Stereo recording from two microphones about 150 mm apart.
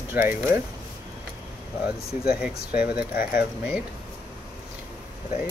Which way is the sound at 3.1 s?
85° left.